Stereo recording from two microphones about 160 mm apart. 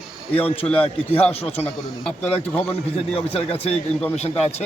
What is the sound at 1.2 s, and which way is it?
Speech, 40° left (ahead or behind).